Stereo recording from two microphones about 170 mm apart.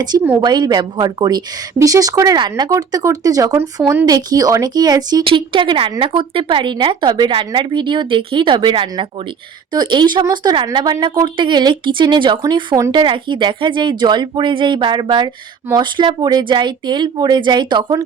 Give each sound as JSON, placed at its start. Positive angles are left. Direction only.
{"t": 0.0, "sound": "speech", "side_deg": -25}